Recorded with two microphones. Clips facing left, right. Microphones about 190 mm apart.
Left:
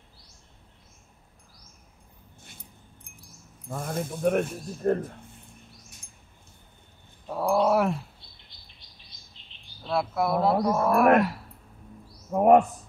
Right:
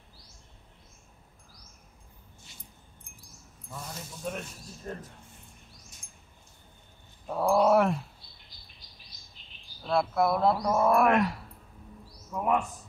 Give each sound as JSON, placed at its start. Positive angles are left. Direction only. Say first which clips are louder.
{"t": 3.6, "sound": "speech", "louder": "left 11 dB", "side_deg": 55}
{"t": 7.2, "sound": "roaring cats", "louder": "even", "side_deg": 0}
{"t": 9.4, "sound": "chirp", "louder": "left 1 dB", "side_deg": 25}
{"t": 9.8, "sound": "speech", "louder": "right 1 dB", "side_deg": 0}
{"t": 12.3, "sound": "a sound", "louder": "left 10 dB", "side_deg": 50}